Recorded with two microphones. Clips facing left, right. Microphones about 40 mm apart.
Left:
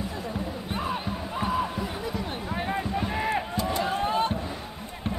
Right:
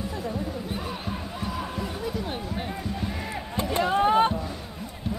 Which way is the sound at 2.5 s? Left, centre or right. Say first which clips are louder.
Left 4 dB; left.